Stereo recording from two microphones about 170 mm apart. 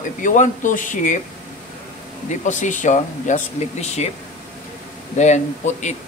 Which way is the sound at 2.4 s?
45° left (ahead or behind).